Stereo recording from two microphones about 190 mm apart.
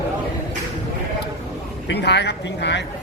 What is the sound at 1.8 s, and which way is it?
Speech, 65° left (ahead or behind).